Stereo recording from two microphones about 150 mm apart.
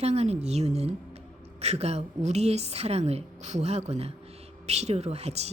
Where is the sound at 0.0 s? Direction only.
45° right (ahead or behind).